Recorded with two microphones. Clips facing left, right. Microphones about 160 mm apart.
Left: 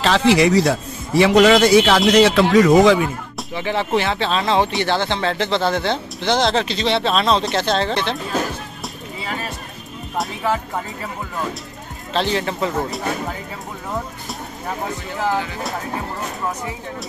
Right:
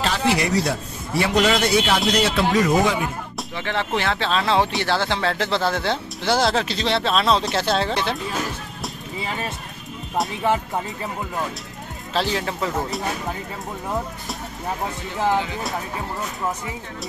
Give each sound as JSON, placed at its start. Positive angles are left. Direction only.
{"t": 0.0, "sound": "a man's voice", "side_deg": 90}
{"t": 3.3, "sound": "speech", "side_deg": 5}
{"t": 12.1, "sound": "speech", "side_deg": -5}